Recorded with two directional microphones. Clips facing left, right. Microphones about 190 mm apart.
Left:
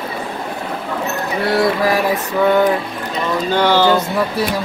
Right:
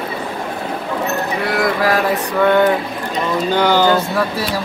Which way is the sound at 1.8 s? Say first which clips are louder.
Even; 10° left (ahead or behind).